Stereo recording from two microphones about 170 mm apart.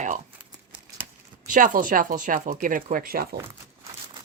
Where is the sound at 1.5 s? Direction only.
50° right (ahead or behind).